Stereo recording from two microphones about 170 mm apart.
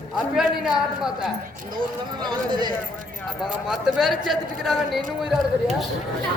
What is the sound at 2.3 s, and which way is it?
Speech, 25° right (ahead or behind).